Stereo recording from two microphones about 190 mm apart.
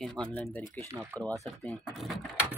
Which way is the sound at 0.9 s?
10° right (ahead or behind).